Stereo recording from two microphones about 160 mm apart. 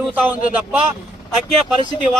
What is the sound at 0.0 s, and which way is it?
Speech, 10° right (ahead or behind).